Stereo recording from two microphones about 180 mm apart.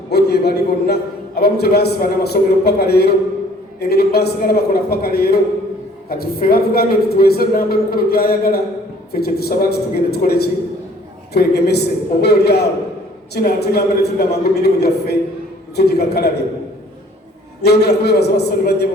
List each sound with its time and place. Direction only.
0.1 s a man's voice: 65° left (ahead or behind)
17.6 s a man's voice: 65° left (ahead or behind)